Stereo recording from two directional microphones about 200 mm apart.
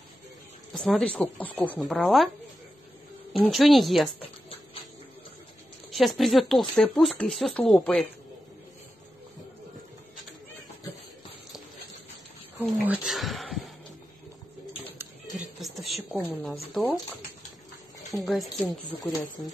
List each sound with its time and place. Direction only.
0.7 s speech: 5° left (ahead or behind)
3.3 s speech: centre (ahead or behind)
5.9 s a woman's voice: centre (ahead or behind)
12.8 s a sound: 5° right (ahead or behind)
15.9 s a woman's voice: 5° left (ahead or behind)
18.1 s speech: centre (ahead or behind)
18.6 s speech: 20° left (ahead or behind)